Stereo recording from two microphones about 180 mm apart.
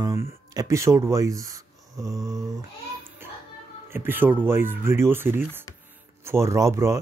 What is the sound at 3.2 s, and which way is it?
Music, 10° right (ahead or behind).